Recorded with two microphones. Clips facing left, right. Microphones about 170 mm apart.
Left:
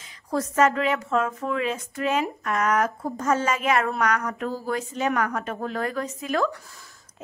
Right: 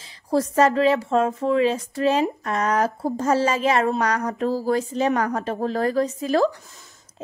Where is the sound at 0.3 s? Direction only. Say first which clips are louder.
Right 3 dB; 35° right (ahead or behind).